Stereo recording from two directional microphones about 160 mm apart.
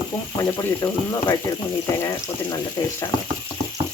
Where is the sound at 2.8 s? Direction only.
25° left (ahead or behind).